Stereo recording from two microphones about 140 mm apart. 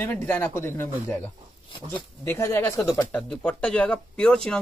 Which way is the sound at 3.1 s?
5° left (ahead or behind).